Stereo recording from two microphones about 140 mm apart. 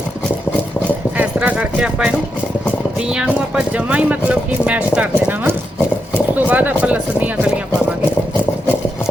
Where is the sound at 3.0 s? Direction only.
5° right (ahead or behind).